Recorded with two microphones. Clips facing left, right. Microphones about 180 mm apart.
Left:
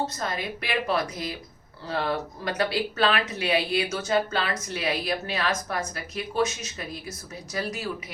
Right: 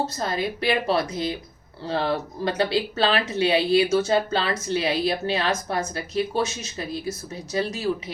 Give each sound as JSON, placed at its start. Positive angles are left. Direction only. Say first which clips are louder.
{"t": 0.1, "sound": "a woman's voice", "louder": "right 5 dB", "side_deg": -30}